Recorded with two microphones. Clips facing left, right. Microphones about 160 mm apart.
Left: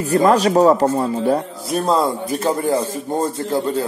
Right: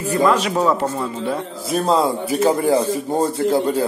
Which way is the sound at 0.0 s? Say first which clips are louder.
Left 3 dB; 40° left (ahead or behind).